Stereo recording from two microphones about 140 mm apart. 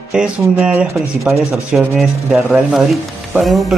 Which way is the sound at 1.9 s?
Centre (ahead or behind).